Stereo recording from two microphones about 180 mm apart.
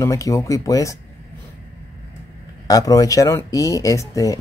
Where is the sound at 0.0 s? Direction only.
20° left (ahead or behind).